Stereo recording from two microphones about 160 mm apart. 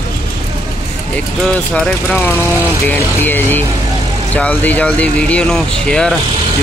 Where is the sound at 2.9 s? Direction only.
10° left (ahead or behind).